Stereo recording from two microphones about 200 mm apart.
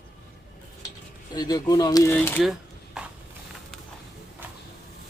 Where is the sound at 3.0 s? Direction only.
5° right (ahead or behind).